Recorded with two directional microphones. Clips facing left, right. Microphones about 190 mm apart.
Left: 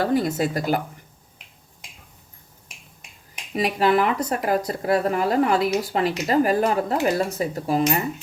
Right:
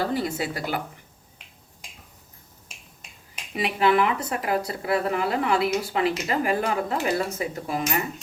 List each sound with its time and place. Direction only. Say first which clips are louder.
0.0 s speech: left 5 dB; 50° left (ahead or behind)
3.5 s speech: left 2 dB; 40° left (ahead or behind)